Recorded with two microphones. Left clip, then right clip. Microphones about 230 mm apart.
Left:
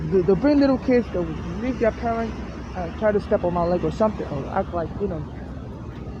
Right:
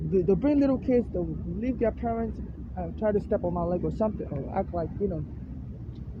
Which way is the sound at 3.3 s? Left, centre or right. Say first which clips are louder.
Left 7 dB; left.